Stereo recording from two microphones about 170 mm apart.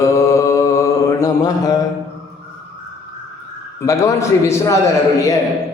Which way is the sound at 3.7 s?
20° left (ahead or behind).